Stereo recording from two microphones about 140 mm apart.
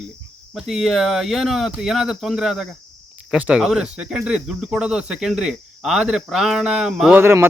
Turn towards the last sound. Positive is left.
turn(degrees=-15)  # may be behind; listen again after turning